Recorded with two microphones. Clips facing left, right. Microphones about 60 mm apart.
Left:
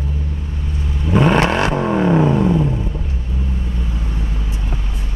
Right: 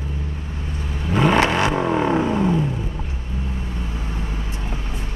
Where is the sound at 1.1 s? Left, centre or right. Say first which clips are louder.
Left 3 dB; centre.